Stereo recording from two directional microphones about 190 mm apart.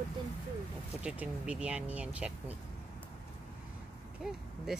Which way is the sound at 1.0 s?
5° right (ahead or behind).